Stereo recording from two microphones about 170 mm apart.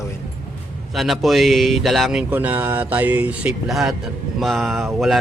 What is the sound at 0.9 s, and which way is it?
Speech, centre (ahead or behind).